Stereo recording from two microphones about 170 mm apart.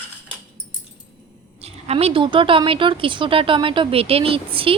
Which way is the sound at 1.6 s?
35° right (ahead or behind).